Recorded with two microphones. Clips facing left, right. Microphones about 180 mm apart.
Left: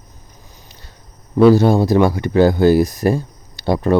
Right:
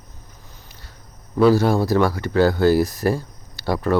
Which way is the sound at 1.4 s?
20° left (ahead or behind).